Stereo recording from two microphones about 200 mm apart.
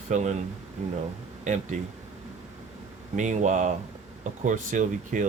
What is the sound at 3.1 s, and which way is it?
Speech, 35° right (ahead or behind).